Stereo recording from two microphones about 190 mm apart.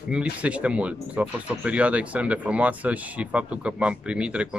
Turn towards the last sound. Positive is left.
turn(degrees=-5)  # may be behind; listen again after turning